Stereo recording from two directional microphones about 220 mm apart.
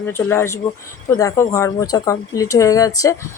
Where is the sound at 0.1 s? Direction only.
10° left (ahead or behind).